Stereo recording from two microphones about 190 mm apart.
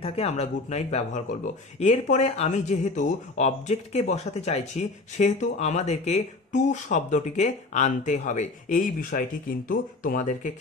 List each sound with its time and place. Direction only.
0.0 s speech: 30° left (ahead or behind)